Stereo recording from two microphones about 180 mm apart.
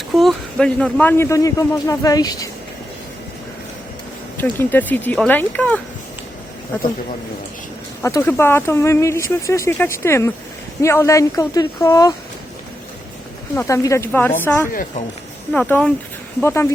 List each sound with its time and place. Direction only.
0.1 s a man's voice: centre (ahead or behind); by 2.5 s 20° left (ahead or behind)
4.4 s a man's voice: 10° left (ahead or behind)
8.0 s a man's voice: 15° left (ahead or behind)
13.6 s a man's voice: 15° left (ahead or behind)
14.7 s speech: 50° left (ahead or behind)
15.5 s a man's voice: 10° left (ahead or behind)